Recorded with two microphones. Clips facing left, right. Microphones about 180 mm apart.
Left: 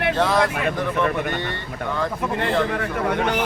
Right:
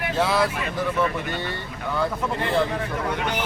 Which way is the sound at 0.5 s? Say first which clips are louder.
Left 2 dB; 55° left (ahead or behind).